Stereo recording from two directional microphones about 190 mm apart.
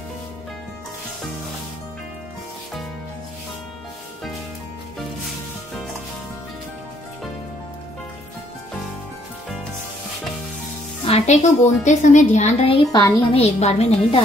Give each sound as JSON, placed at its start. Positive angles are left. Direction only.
{"t": 11.1, "sound": "a woman's voice", "side_deg": 35}